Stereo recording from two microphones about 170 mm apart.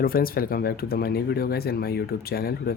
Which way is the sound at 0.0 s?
60° left (ahead or behind).